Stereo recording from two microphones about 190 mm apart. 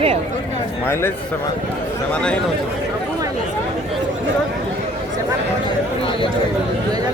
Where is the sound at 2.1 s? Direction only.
5° left (ahead or behind).